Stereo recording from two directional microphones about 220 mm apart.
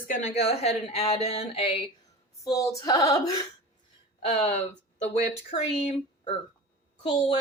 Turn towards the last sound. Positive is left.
turn(degrees=25)  # may be behind; listen again after turning